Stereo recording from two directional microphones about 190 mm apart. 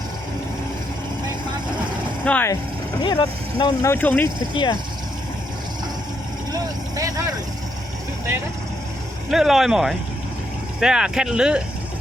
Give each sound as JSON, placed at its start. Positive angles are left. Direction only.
{"t": 2.2, "sound": "speech", "side_deg": 5}
{"t": 3.0, "sound": "speech", "side_deg": 25}
{"t": 3.9, "sound": "speech", "side_deg": 10}
{"t": 4.5, "sound": "speech", "side_deg": 25}
{"t": 6.5, "sound": "vehicle", "side_deg": -20}
{"t": 9.3, "sound": "speech", "side_deg": 0}